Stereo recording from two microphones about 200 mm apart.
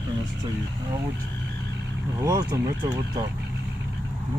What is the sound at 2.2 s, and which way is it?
Speech, 15° right (ahead or behind).